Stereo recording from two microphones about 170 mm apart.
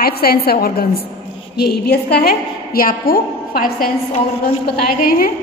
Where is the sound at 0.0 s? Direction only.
60° left (ahead or behind).